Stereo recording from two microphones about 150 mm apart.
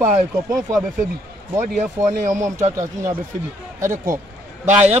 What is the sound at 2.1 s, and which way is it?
Speech, 55° right (ahead or behind).